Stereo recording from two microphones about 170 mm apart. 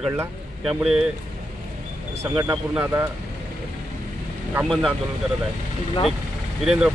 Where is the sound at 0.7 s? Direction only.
Centre (ahead or behind).